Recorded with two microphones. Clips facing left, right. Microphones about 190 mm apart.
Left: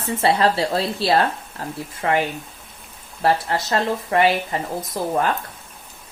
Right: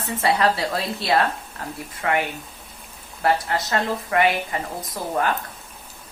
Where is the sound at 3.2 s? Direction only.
30° left (ahead or behind).